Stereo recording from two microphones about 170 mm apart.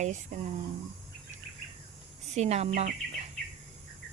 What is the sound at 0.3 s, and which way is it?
Speech, 45° right (ahead or behind).